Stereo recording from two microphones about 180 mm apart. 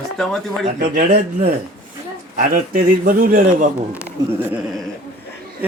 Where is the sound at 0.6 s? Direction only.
45° right (ahead or behind).